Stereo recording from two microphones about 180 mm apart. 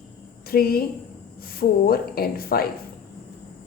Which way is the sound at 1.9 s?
55° left (ahead or behind).